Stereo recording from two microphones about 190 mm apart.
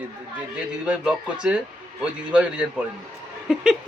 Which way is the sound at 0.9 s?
5° right (ahead or behind).